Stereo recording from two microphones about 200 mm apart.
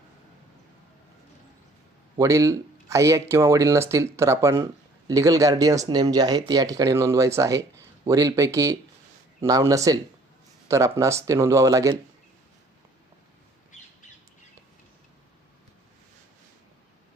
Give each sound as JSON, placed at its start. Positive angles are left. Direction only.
{"t": 2.1, "sound": "speech", "side_deg": -15}